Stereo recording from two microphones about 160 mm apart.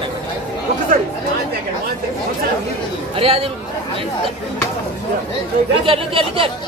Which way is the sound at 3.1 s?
35° right (ahead or behind).